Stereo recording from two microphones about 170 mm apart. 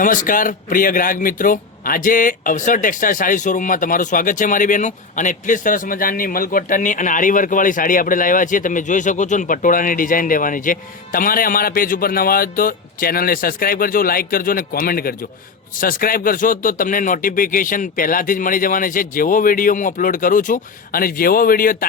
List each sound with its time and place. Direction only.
0.0 s a man's voice: 50° left (ahead or behind)